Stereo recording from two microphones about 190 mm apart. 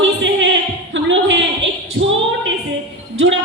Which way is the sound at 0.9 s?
75° right (ahead or behind).